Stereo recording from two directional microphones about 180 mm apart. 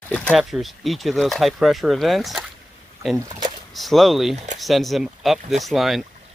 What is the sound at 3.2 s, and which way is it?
Speech, 20° right (ahead or behind).